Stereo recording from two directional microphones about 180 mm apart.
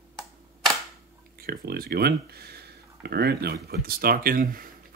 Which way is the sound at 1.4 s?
60° right (ahead or behind).